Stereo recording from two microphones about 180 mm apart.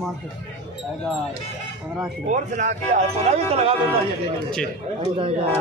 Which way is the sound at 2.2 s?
40° right (ahead or behind).